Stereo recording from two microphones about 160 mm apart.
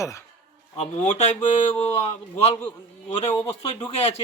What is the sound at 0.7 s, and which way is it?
Speech, 45° left (ahead or behind).